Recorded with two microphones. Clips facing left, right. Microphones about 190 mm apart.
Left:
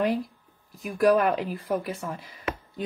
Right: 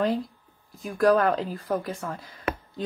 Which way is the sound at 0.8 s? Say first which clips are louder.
Even; 15° left (ahead or behind).